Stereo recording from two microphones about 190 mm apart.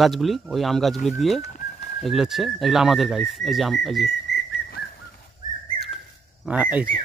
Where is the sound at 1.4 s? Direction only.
40° left (ahead or behind).